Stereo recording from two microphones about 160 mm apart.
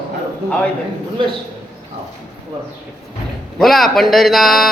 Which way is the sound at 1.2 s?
30° right (ahead or behind).